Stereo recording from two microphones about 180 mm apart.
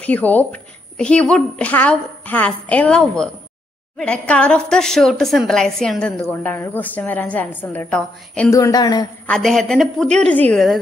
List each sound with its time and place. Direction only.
0.0 s a woman's voice: 10° left (ahead or behind)
9.2 s a woman's voice: 5° left (ahead or behind)